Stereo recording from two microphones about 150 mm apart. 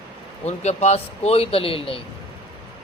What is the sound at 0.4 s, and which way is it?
A man's voice, 45° left (ahead or behind).